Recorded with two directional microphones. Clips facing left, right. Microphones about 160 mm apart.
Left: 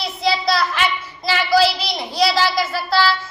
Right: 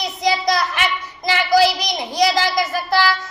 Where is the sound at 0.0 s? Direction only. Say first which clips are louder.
Right 1 dB; 15° right (ahead or behind).